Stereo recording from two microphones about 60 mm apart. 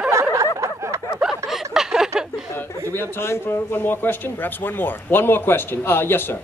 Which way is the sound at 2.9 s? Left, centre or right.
Left.